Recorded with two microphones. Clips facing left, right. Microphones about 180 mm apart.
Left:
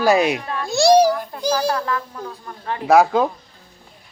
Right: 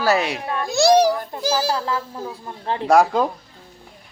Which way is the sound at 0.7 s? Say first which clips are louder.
Left 2 dB; centre (ahead or behind).